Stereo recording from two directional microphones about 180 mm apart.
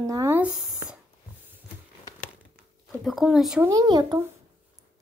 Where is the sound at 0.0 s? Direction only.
15° right (ahead or behind).